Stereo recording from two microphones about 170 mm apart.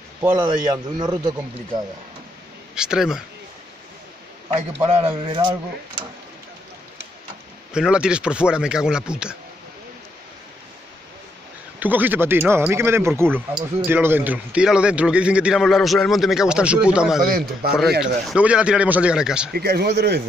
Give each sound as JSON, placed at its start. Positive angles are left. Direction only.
{"t": 0.2, "sound": "a man's voice", "side_deg": -15}
{"t": 2.7, "sound": "speech", "side_deg": -5}
{"t": 4.5, "sound": "speech", "side_deg": -35}
{"t": 7.7, "sound": "a man's voice", "side_deg": -5}
{"t": 11.8, "sound": "a man's voice", "side_deg": -10}
{"t": 17.3, "sound": "a man's voice", "side_deg": -60}
{"t": 18.0, "sound": "a man's voice", "side_deg": -5}
{"t": 19.5, "sound": "speech", "side_deg": -70}